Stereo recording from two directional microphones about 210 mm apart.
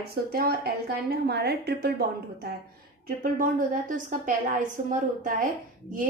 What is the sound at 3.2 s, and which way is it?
Speech, 40° right (ahead or behind).